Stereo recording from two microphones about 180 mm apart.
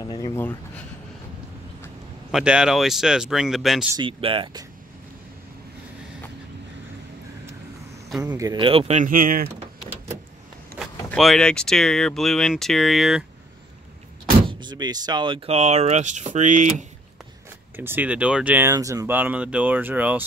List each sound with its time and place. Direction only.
0.0 s speech: 20° left (ahead or behind)
2.3 s speech: 5° right (ahead or behind)
3.9 s speech: 30° right (ahead or behind)
8.3 s speech: 20° right (ahead or behind); by 9.5 s 50° right (ahead or behind)
10.8 s speech: centre (ahead or behind)
14.5 s speech: 25° right (ahead or behind); by 16.8 s 45° right (ahead or behind)
17.7 s speech: 10° right (ahead or behind)